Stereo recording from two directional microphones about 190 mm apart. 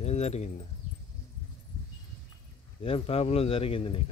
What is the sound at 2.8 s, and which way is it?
Speech, 30° left (ahead or behind).